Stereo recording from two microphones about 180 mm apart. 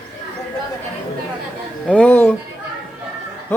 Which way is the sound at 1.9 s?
10° left (ahead or behind).